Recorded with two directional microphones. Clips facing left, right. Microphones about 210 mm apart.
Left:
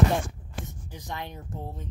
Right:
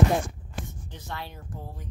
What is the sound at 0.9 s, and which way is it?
Speech, 15° left (ahead or behind).